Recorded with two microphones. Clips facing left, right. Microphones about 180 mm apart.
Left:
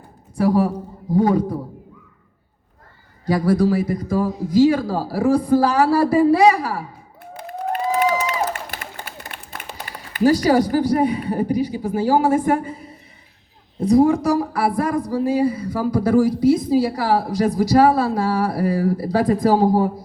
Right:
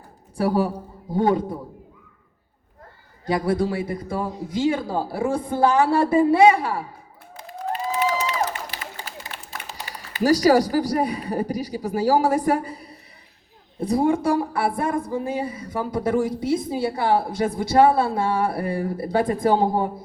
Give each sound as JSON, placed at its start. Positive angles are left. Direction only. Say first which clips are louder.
{"t": 0.3, "sound": "a woman's voice", "louder": "left 4 dB", "side_deg": -30}
{"t": 3.2, "sound": "a woman's voice", "louder": "left 5 dB", "side_deg": -25}
{"t": 7.3, "sound": "a sound", "louder": "left 4 dB", "side_deg": 55}
{"t": 10.2, "sound": "a woman's voice", "louder": "left 1 dB", "side_deg": -40}